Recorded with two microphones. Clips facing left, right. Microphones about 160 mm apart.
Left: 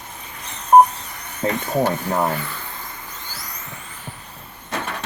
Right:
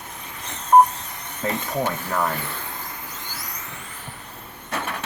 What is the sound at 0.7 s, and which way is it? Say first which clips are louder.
Telephone dialing: left 3 dB; 20° left (ahead or behind).